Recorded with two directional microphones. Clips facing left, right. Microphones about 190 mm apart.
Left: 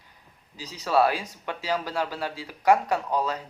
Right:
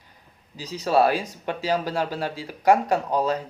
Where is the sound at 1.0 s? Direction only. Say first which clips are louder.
Right 3 dB; 40° right (ahead or behind).